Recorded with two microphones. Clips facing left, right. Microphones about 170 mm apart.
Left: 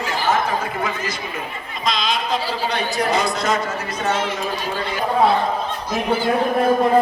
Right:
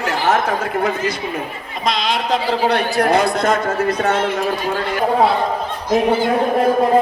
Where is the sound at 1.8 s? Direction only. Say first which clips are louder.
Right 3 dB; 65° right (ahead or behind).